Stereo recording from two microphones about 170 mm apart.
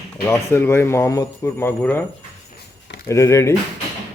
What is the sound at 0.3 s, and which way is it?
A man's voice, 15° left (ahead or behind).